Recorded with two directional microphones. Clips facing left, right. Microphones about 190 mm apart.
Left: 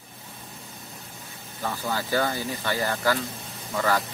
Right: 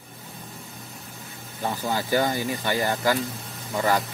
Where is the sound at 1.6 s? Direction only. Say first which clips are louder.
Right 3 dB; 20° right (ahead or behind).